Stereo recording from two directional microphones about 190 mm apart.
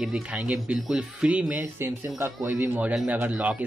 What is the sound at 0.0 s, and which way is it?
Speech, 5° right (ahead or behind).